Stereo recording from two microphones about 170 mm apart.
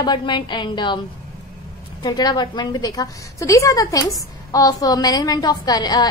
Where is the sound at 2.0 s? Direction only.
25° left (ahead or behind).